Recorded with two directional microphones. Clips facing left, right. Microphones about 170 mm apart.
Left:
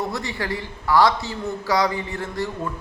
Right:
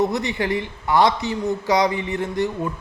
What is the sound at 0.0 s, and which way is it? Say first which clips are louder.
A man's voice: right 6 dB; 20° right (ahead or behind).